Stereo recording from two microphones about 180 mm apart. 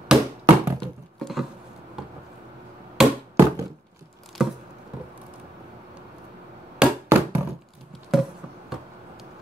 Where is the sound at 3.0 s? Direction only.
5° right (ahead or behind).